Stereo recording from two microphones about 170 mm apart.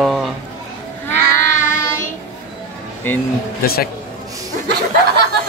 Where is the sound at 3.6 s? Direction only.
60° left (ahead or behind).